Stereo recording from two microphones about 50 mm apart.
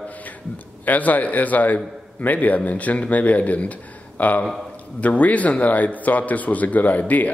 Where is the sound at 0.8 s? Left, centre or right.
Left.